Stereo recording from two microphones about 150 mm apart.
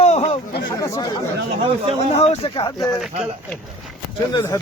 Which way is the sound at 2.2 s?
45° left (ahead or behind).